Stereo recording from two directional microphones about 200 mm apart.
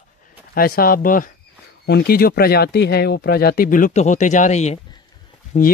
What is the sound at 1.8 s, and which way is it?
Speech, 55° left (ahead or behind).